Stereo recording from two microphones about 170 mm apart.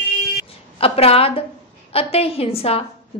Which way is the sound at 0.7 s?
35° left (ahead or behind).